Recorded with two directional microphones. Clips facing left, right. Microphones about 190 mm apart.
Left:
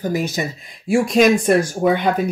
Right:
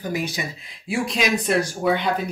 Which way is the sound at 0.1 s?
45° left (ahead or behind).